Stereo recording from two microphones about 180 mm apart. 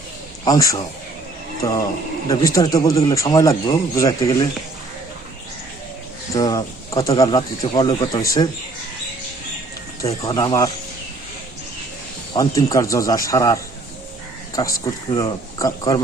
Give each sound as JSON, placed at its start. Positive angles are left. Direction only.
{"t": 0.4, "sound": "speech", "side_deg": 20}
{"t": 2.3, "sound": "speech", "side_deg": 20}
{"t": 6.3, "sound": "speech", "side_deg": 20}
{"t": 10.2, "sound": "speech", "side_deg": 20}
{"t": 12.3, "sound": "speech", "side_deg": 20}